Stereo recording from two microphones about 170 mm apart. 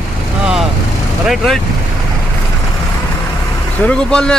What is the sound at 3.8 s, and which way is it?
Speech, 5° left (ahead or behind).